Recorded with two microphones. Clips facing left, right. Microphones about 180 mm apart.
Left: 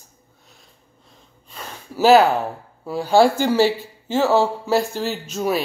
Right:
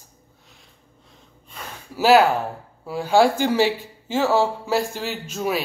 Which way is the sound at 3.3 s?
15° right (ahead or behind).